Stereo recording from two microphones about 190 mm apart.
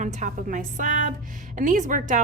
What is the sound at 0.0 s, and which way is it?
A woman's voice, 40° right (ahead or behind).